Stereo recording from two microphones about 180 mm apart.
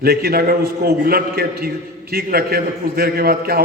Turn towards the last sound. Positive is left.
turn(degrees=-55)  # may be behind; listen again after turning